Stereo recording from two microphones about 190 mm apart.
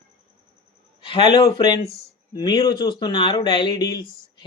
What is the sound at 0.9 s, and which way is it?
Speech, 25° left (ahead or behind).